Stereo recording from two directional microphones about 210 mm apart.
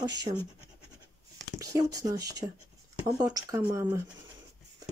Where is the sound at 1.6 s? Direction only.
15° right (ahead or behind).